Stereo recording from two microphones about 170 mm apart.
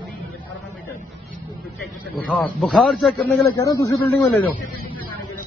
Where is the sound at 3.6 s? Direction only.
20° left (ahead or behind).